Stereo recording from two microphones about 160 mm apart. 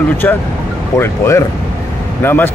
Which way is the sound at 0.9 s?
15° left (ahead or behind).